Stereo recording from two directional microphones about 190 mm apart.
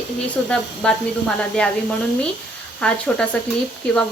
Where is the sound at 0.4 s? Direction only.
5° left (ahead or behind).